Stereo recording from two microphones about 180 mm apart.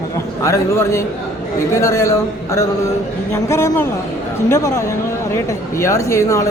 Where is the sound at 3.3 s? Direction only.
15° left (ahead or behind).